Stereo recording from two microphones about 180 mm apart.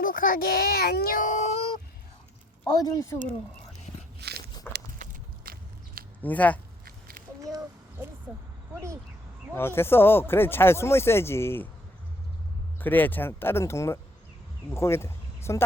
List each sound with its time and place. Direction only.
0.0 s a child's voice: 50° left (ahead or behind)
2.8 s speech: 20° left (ahead or behind)
4.2 s walk: 65° right (ahead or behind)
5.5 s biting: 55° right (ahead or behind)
6.2 s speech: 10° left (ahead or behind)
9.6 s speech: 15° left (ahead or behind)
12.8 s speech: 10° left (ahead or behind)